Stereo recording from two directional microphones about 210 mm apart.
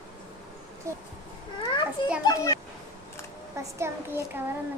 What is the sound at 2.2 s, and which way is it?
Speech, 15° left (ahead or behind).